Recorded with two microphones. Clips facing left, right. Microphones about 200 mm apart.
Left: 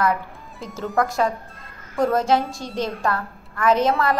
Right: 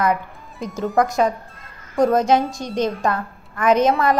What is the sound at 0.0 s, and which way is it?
A woman's voice, 20° right (ahead or behind).